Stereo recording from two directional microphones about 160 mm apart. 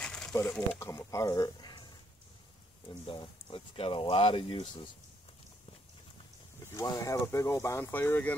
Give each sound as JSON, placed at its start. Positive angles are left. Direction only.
{"t": 0.0, "sound": "speech", "side_deg": 5}
{"t": 2.9, "sound": "speech", "side_deg": 30}
{"t": 6.6, "sound": "speech", "side_deg": 20}